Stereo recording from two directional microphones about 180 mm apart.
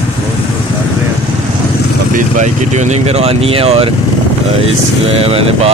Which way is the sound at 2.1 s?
45° right (ahead or behind).